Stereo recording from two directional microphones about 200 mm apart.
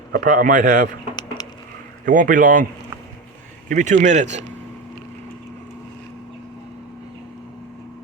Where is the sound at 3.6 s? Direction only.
40° right (ahead or behind).